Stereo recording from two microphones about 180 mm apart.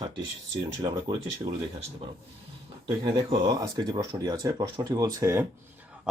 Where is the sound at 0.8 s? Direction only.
25° right (ahead or behind).